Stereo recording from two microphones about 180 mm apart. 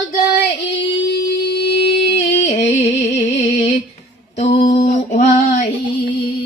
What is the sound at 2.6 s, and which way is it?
Music, 35° left (ahead or behind).